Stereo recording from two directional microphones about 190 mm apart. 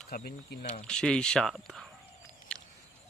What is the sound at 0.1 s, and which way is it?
Speech, 55° left (ahead or behind).